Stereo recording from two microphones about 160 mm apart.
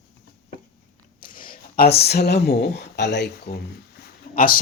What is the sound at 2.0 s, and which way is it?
Speech, 90° left.